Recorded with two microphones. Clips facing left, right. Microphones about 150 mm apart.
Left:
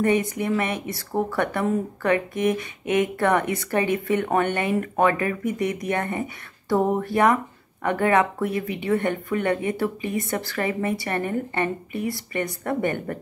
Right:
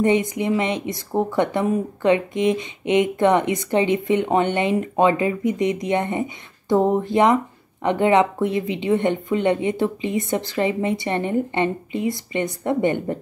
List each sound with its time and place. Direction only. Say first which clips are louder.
0.0 s speech: right 3 dB; 20° right (ahead or behind)